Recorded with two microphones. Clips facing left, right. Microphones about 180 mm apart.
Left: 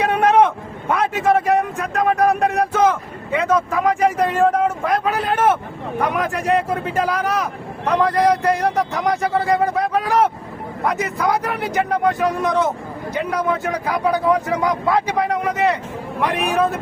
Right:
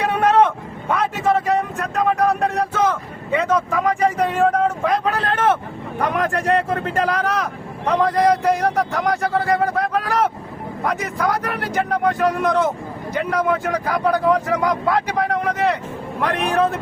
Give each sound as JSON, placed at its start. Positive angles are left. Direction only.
{"t": 0.0, "sound": "a sound", "side_deg": 15}
{"t": 0.9, "sound": "vehicle", "side_deg": 10}
{"t": 2.2, "sound": "speech", "side_deg": 10}